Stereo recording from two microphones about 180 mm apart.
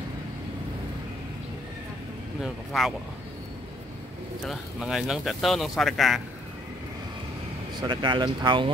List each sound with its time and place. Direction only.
2.4 s speech: centre (ahead or behind)
4.5 s speech: centre (ahead or behind)
7.8 s speech: 25° right (ahead or behind)